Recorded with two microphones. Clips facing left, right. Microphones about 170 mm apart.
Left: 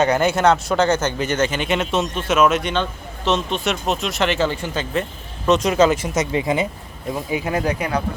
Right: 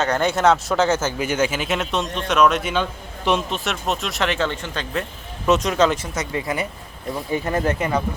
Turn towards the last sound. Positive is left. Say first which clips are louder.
# even
turn(degrees=0)  # may be behind; listen again after turning